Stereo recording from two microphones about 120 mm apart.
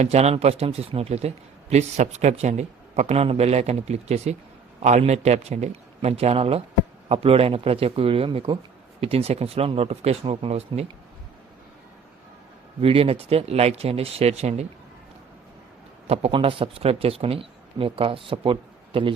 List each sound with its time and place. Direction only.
0.0 s speech: 65° right (ahead or behind)
1.7 s speech: 70° right (ahead or behind)
12.8 s speech: 50° right (ahead or behind)
16.0 s speech: 60° right (ahead or behind)